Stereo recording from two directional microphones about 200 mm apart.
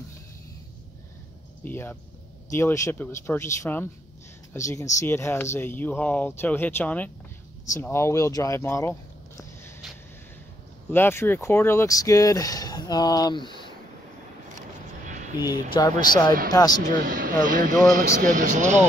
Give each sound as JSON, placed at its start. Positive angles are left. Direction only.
{"t": 1.6, "sound": "speech", "side_deg": 10}
{"t": 10.9, "sound": "speech", "side_deg": 10}
{"t": 15.0, "sound": "a sound", "side_deg": -40}
{"t": 15.4, "sound": "speech", "side_deg": 20}
{"t": 16.8, "sound": "speech", "side_deg": -45}